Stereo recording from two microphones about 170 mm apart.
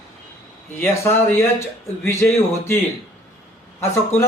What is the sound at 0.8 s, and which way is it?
Speech, 15° left (ahead or behind).